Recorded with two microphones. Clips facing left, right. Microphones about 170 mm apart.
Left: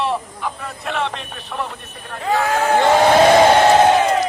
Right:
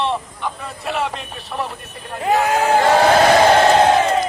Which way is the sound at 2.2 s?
20° right (ahead or behind).